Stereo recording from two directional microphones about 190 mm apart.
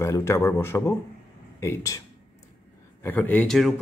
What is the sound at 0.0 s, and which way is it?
Speech, 15° left (ahead or behind).